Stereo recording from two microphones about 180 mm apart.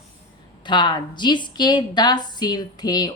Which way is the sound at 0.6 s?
25° left (ahead or behind).